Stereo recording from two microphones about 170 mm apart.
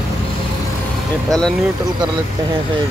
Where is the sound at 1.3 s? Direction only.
5° left (ahead or behind).